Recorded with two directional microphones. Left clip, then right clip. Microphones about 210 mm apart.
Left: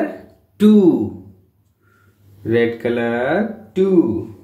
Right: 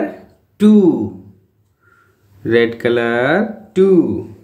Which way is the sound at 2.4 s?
20° right (ahead or behind).